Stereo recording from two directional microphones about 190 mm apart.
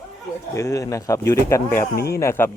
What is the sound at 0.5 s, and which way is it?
Speech, 15° left (ahead or behind).